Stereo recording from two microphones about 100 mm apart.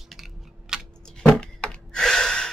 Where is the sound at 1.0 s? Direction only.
5° left (ahead or behind).